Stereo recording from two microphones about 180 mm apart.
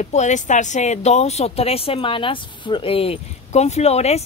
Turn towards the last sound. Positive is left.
turn(degrees=35)  # may be behind; listen again after turning